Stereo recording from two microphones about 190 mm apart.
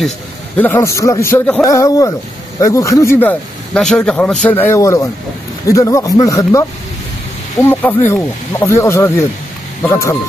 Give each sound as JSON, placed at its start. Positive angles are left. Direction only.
{"t": 0.6, "sound": "speech", "side_deg": 10}
{"t": 7.6, "sound": "speech", "side_deg": 10}